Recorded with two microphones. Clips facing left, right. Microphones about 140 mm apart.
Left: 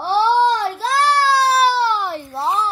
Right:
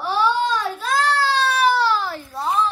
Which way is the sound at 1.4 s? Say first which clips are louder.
Left 2 dB; 35° left (ahead or behind).